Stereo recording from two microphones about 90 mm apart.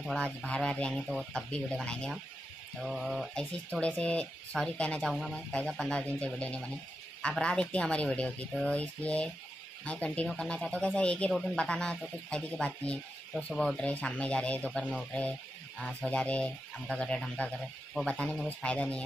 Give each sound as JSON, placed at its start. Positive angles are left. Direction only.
{"t": 0.1, "sound": "speech", "side_deg": 10}
{"t": 1.5, "sound": "speech", "side_deg": 10}
{"t": 3.8, "sound": "speech", "side_deg": 15}